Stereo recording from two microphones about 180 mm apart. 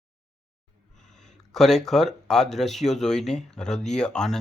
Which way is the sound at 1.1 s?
Centre (ahead or behind).